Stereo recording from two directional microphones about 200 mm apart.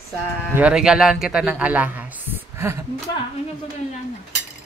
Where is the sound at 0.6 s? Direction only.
5° right (ahead or behind).